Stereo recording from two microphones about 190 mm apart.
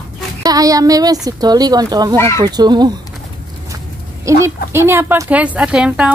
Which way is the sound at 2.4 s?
20° right (ahead or behind).